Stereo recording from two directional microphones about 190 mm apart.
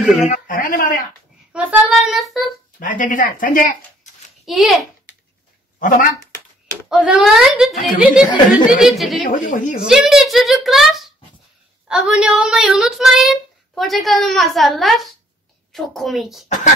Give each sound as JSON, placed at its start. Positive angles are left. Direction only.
{"t": 0.3, "sound": "speech", "side_deg": 45}
{"t": 1.5, "sound": "a woman's voice", "side_deg": -5}
{"t": 2.8, "sound": "speech", "side_deg": 45}
{"t": 4.5, "sound": "a woman's voice", "side_deg": 0}
{"t": 5.8, "sound": "speech", "side_deg": 45}
{"t": 6.9, "sound": "a woman's voice", "side_deg": -5}
{"t": 9.3, "sound": "speech", "side_deg": 45}
{"t": 9.8, "sound": "a woman's voice", "side_deg": -5}